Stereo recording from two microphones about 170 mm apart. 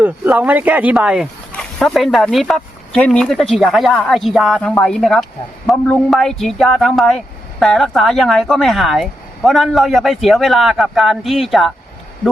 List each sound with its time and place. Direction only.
0.0 s speech: 10° right (ahead or behind)